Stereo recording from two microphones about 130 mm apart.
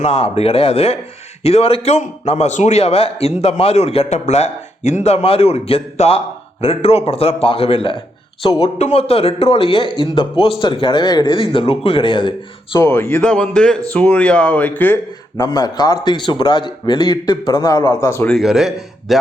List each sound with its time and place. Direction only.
0.0 s a man's voice: 55° left (ahead or behind)
8.8 s a man's voice: 55° left (ahead or behind); by 12.3 s 40° left (ahead or behind)
12.8 s speech: 20° left (ahead or behind)
15.4 s a man's voice: 30° left (ahead or behind)
18.3 s speech: centre (ahead or behind)